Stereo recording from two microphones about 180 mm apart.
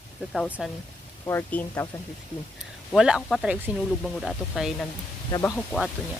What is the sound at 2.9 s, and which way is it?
Speech, centre (ahead or behind).